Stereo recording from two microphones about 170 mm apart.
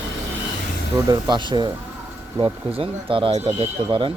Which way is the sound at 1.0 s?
25° right (ahead or behind).